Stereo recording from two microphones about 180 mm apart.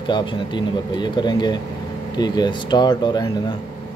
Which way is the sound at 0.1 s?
25° left (ahead or behind).